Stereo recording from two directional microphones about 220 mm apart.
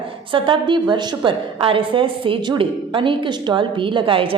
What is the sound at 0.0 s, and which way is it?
A woman's voice, 25° right (ahead or behind).